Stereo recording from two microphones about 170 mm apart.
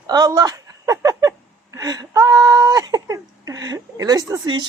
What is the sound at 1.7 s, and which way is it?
A man's voice, 20° right (ahead or behind).